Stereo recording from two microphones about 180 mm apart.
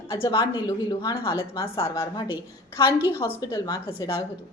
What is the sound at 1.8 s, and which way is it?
Speech, 15° left (ahead or behind).